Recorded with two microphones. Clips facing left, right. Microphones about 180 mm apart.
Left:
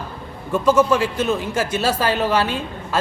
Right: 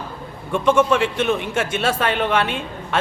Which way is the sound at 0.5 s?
5° left (ahead or behind).